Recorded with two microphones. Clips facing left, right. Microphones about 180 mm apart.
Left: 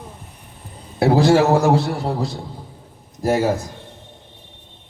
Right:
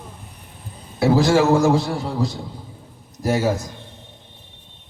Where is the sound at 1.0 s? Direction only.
60° left (ahead or behind).